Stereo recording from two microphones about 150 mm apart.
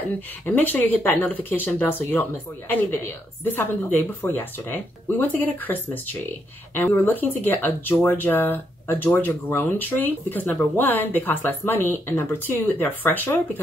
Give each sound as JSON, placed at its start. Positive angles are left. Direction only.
{"t": 0.6, "sound": "speech", "side_deg": 10}
{"t": 3.4, "sound": "speech", "side_deg": 15}